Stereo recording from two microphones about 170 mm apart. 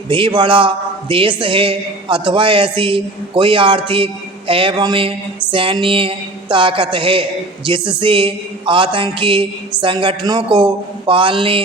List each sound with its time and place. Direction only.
0.1 s a woman's voice: 30° right (ahead or behind)